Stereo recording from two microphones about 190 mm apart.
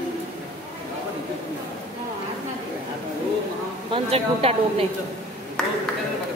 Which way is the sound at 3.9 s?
30° right (ahead or behind).